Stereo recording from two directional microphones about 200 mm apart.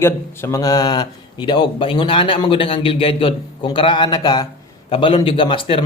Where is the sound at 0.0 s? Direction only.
15° left (ahead or behind).